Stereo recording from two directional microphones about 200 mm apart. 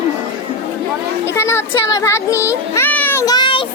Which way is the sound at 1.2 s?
15° left (ahead or behind).